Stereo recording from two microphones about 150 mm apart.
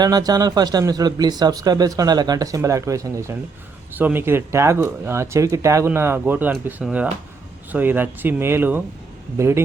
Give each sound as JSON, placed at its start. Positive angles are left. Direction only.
{"t": 0.0, "sound": "speech", "side_deg": -25}